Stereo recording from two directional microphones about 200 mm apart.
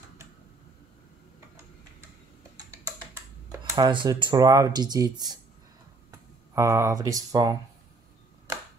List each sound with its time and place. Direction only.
3.7 s speech: 25° right (ahead or behind)
6.5 s speech: 15° right (ahead or behind)